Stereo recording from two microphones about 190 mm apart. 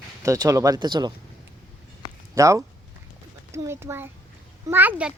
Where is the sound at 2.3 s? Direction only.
15° right (ahead or behind).